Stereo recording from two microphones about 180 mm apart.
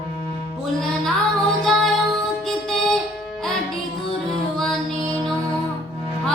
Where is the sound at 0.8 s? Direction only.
Centre (ahead or behind).